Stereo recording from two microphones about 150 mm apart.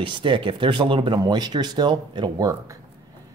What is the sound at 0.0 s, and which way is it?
Speech, 35° right (ahead or behind).